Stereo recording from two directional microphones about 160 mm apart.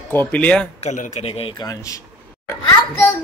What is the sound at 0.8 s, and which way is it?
Speech, 50° left (ahead or behind).